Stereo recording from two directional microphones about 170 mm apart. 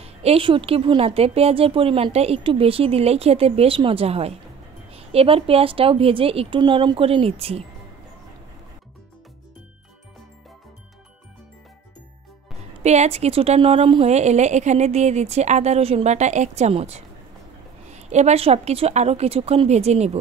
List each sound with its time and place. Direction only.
0.0 s speech: 35° right (ahead or behind)
12.8 s speech: 40° right (ahead or behind)